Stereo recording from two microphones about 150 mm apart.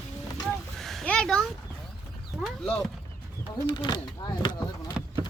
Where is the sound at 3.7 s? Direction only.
30° left (ahead or behind).